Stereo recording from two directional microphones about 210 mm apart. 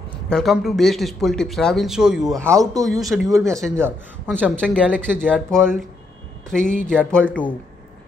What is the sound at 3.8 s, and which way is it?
Speech, 10° right (ahead or behind).